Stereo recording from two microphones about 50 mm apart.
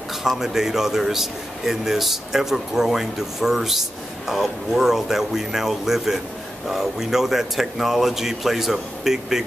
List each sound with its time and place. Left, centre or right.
0.2 s speech: centre